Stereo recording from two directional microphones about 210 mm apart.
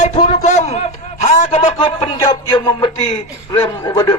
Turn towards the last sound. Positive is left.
turn(degrees=20)  # may be behind; listen again after turning